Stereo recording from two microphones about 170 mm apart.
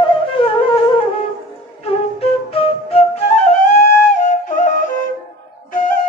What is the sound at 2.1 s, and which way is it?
Flute, 35° left (ahead or behind).